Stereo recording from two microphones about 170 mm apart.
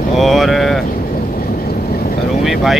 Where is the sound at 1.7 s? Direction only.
65° left (ahead or behind).